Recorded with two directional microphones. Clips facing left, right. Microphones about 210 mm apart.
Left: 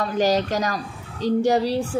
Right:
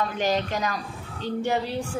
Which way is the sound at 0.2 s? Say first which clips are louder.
Left 6 dB; 40° left (ahead or behind).